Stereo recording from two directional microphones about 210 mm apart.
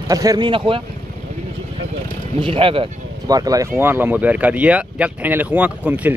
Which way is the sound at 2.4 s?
25° right (ahead or behind).